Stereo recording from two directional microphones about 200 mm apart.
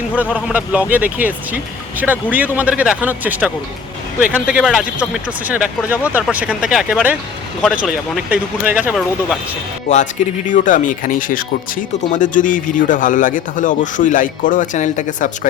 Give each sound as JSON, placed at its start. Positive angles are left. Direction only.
{"t": 0.3, "sound": "speech", "side_deg": -5}
{"t": 9.9, "sound": "speech", "side_deg": 40}